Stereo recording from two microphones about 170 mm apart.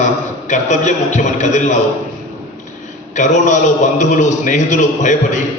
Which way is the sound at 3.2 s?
45° left (ahead or behind).